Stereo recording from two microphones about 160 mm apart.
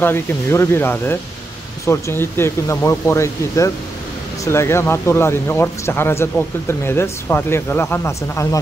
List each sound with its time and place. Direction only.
0.0 s speech: 15° left (ahead or behind)